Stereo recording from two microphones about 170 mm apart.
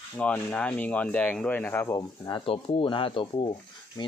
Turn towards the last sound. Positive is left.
turn(degrees=25)  # may be behind; listen again after turning